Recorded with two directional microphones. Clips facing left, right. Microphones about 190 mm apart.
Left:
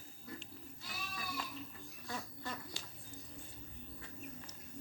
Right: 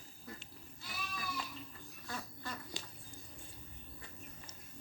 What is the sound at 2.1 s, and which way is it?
Duck, 20° left (ahead or behind).